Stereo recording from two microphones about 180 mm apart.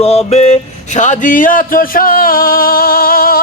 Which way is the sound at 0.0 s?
35° left (ahead or behind).